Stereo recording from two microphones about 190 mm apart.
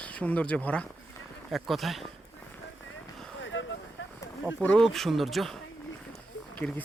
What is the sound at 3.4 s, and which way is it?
Vehicle, 90° left.